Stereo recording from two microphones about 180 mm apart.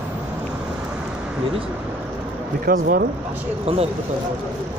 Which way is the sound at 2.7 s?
55° right (ahead or behind).